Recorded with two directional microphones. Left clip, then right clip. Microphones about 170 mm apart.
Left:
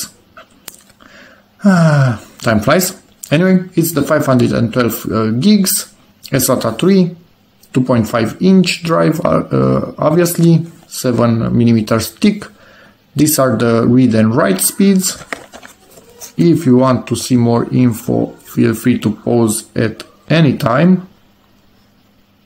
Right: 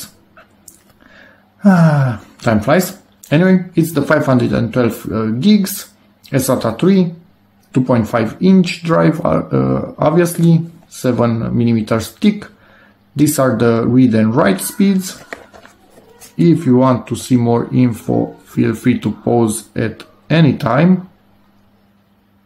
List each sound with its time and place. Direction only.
1.1 s a sound: 35° left (ahead or behind)
3.3 s speech: 35° left (ahead or behind)
16.3 s speech: 30° left (ahead or behind)